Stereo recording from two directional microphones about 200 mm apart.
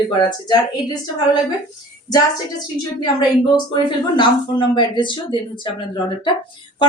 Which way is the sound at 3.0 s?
20° left (ahead or behind).